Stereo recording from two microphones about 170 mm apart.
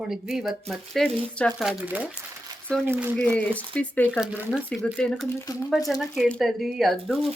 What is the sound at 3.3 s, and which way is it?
Speech, 10° left (ahead or behind).